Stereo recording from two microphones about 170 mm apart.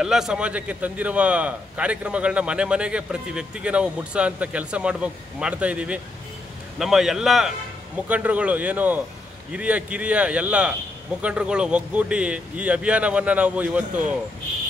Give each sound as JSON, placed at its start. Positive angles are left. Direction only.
{"t": 0.0, "sound": "a man's voice", "side_deg": -5}